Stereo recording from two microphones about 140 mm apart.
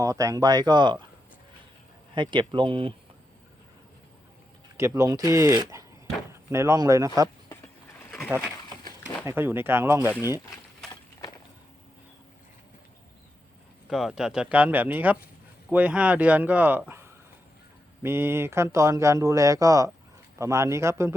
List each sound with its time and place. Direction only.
0.0 s speech: 25° right (ahead or behind)
2.3 s speech: 35° right (ahead or behind)
4.9 s speech: 25° right (ahead or behind)
9.2 s speech: 15° right (ahead or behind)
13.8 s speech: 5° right (ahead or behind); by 21.2 s 20° right (ahead or behind)